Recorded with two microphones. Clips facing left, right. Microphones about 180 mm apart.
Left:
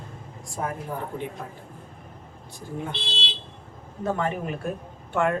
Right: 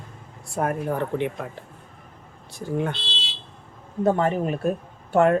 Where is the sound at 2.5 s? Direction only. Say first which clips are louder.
Right 7 dB; 75° right (ahead or behind).